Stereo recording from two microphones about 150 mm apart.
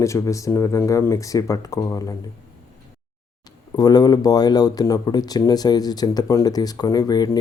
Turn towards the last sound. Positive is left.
turn(degrees=25)  # may be behind; listen again after turning